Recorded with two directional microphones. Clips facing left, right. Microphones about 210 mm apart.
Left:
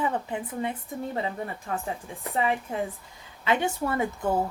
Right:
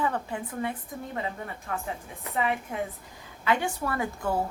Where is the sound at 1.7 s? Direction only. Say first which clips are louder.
Left 1 dB; 30° left (ahead or behind).